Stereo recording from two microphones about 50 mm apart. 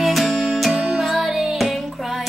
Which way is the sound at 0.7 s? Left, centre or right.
Centre.